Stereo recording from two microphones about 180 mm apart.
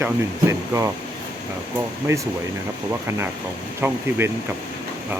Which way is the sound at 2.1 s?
15° right (ahead or behind).